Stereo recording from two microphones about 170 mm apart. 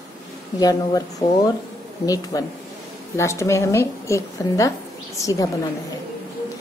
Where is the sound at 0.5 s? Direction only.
20° left (ahead or behind).